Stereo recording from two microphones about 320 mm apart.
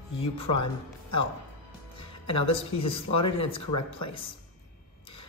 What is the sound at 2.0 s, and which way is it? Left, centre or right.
A woman's voice, centre.